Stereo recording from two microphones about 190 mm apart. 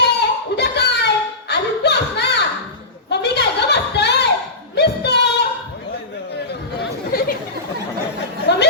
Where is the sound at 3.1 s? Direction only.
60° left (ahead or behind).